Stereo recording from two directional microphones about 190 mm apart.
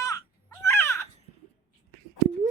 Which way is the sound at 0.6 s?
15° left (ahead or behind).